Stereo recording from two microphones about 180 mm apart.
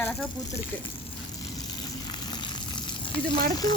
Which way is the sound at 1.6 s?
25° left (ahead or behind).